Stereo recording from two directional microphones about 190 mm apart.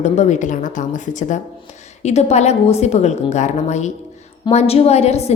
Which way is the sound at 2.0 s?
35° left (ahead or behind).